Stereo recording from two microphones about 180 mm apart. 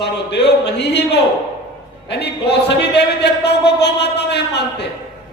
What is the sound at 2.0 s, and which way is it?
A man's voice, 65° left (ahead or behind).